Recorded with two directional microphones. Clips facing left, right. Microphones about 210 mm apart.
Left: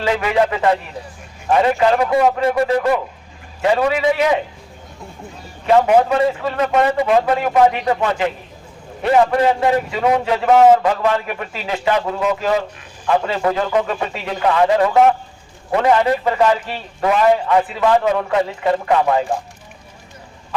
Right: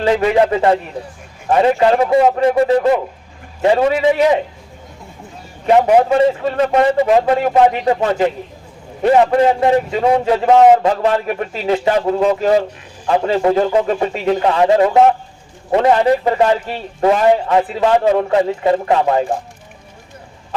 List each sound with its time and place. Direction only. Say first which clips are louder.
0.0 s a man's voice: right 4 dB; 35° right (ahead or behind)
5.8 s a man's voice: right 3 dB; 25° right (ahead or behind)